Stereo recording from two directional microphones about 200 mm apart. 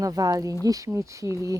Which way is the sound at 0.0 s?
20° right (ahead or behind).